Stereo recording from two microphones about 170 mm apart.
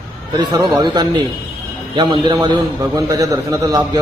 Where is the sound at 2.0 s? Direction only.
25° right (ahead or behind).